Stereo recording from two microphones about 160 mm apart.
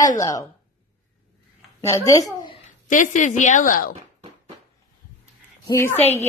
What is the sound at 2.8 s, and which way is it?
A woman's voice, 55° left (ahead or behind).